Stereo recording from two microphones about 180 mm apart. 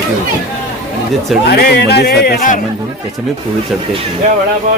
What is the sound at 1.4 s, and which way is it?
Speech, 60° left (ahead or behind).